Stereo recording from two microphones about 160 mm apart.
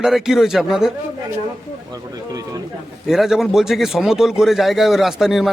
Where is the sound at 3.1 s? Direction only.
Centre (ahead or behind).